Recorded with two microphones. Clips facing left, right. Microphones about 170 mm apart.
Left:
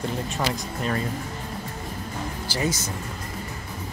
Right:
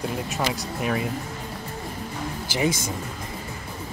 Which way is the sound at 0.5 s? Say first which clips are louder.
Right 1 dB; 10° right (ahead or behind).